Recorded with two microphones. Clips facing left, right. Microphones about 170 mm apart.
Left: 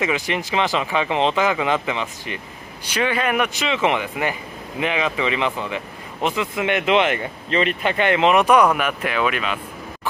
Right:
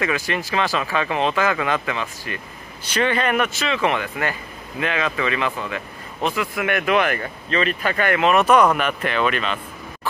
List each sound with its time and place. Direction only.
0.0 s speech: 20° left (ahead or behind)